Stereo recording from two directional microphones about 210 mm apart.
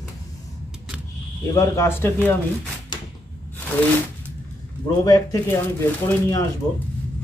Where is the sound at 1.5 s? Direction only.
10° left (ahead or behind).